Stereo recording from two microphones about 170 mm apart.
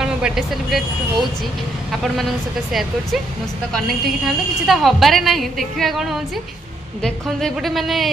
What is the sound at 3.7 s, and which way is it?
A woman's voice, centre (ahead or behind).